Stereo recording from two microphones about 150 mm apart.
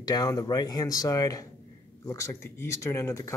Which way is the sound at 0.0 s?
25° left (ahead or behind).